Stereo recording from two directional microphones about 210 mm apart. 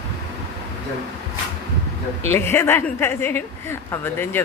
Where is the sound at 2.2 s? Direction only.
10° left (ahead or behind).